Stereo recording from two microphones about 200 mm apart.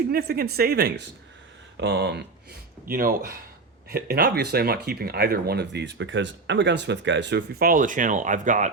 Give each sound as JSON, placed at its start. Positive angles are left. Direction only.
{"t": 0.1, "sound": "speech", "side_deg": -50}